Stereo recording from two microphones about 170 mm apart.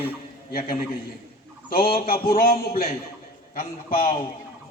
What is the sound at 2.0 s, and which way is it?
A man's voice, 60° left (ahead or behind).